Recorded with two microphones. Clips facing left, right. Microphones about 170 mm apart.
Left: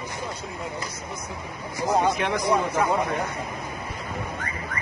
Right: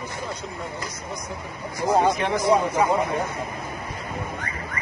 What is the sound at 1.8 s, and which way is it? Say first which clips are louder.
Speech: right 2 dB; 15° right (ahead or behind).